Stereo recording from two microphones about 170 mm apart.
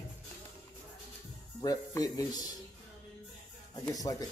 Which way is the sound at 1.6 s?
20° left (ahead or behind).